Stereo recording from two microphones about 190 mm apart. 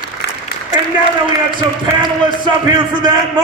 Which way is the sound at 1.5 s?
25° right (ahead or behind).